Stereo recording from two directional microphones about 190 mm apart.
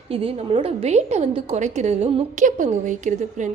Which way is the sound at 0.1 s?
30° right (ahead or behind).